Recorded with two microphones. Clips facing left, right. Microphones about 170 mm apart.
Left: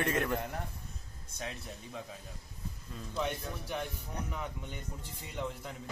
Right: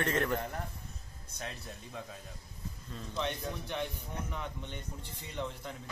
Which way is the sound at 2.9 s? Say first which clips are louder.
Left 1 dB; 5° left (ahead or behind).